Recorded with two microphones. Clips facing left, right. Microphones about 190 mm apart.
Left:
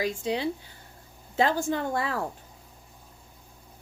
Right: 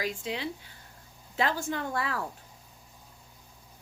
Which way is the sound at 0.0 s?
35° left (ahead or behind).